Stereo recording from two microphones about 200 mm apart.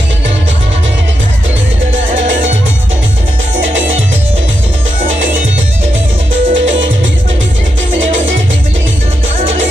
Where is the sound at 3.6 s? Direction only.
75° right (ahead or behind).